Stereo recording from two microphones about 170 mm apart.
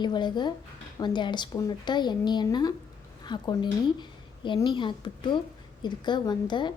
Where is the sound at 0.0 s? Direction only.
25° left (ahead or behind).